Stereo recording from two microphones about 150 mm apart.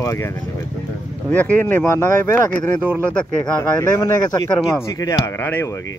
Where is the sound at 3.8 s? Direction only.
20° left (ahead or behind).